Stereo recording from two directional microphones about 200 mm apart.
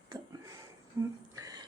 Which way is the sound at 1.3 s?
15° right (ahead or behind).